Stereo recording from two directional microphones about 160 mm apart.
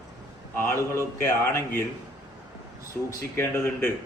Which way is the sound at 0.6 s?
15° left (ahead or behind).